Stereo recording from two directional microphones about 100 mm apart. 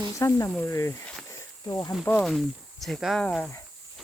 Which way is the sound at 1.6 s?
45° left (ahead or behind).